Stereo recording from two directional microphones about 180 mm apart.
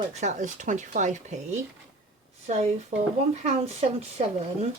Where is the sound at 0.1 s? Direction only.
40° right (ahead or behind).